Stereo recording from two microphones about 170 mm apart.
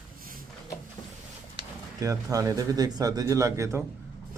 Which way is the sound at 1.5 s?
20° right (ahead or behind).